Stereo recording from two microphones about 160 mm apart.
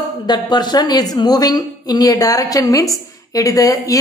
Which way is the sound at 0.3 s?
25° left (ahead or behind).